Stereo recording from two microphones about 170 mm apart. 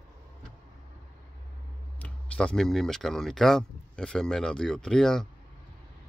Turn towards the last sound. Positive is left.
turn(degrees=5)  # may be behind; listen again after turning